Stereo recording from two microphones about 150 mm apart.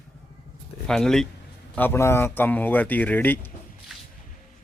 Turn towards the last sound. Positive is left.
turn(degrees=10)  # may be behind; listen again after turning